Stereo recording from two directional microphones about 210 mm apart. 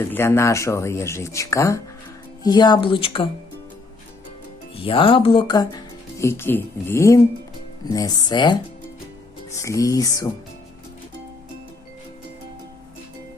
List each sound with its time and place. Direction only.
0.0 s speech: 10° left (ahead or behind)
4.8 s speech: 25° left (ahead or behind)
9.6 s speech: 15° left (ahead or behind)